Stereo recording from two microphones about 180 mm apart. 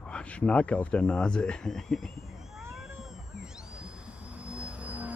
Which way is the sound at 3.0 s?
5° right (ahead or behind).